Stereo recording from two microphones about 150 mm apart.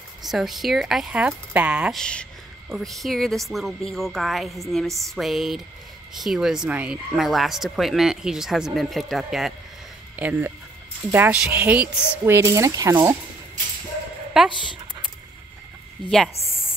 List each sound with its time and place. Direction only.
0.2 s speech: centre (ahead or behind)
2.0 s a woman's voice: 5° left (ahead or behind); by 13.2 s 20° right (ahead or behind)
14.3 s speech: centre (ahead or behind)